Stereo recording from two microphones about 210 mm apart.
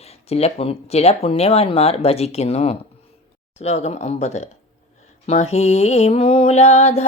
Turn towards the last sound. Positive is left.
turn(degrees=30)  # may be behind; listen again after turning